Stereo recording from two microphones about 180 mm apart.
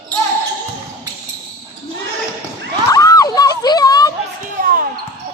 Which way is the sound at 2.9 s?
20° left (ahead or behind).